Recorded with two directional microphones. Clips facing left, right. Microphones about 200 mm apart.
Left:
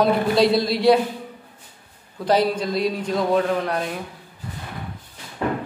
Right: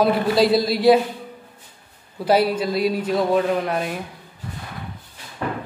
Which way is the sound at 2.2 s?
5° right (ahead or behind).